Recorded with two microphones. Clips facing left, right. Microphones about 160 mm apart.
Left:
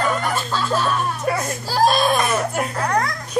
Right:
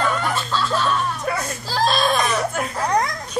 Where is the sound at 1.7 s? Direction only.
10° left (ahead or behind).